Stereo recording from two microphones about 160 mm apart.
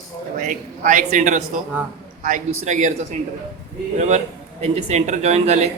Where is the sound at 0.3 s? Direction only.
55° right (ahead or behind).